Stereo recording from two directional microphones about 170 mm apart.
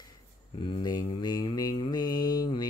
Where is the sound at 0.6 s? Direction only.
25° left (ahead or behind).